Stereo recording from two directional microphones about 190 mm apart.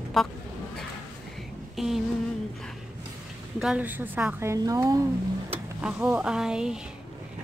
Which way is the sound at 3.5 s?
5° right (ahead or behind).